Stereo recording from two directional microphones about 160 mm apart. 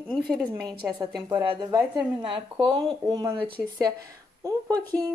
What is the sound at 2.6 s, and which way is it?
A woman's voice, 30° right (ahead or behind).